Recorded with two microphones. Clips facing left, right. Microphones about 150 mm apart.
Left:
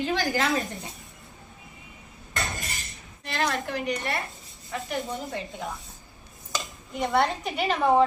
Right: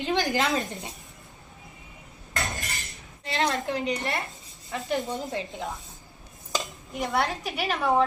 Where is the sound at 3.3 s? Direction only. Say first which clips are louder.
Right 1 dB; 25° right (ahead or behind).